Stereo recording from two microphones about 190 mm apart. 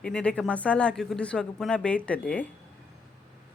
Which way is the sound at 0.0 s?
5° left (ahead or behind).